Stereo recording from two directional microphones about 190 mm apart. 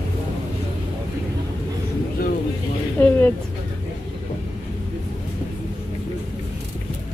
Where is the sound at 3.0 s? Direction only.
10° left (ahead or behind).